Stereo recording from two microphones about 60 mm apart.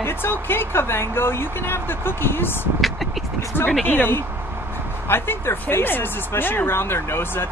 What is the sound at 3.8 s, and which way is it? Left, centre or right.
Speech, left.